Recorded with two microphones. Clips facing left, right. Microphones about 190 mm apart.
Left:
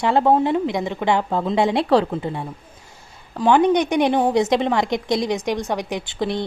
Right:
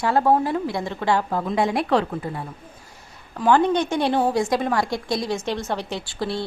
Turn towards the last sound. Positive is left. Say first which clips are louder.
# left 3 dB
turn(degrees=20)  # may be behind; listen again after turning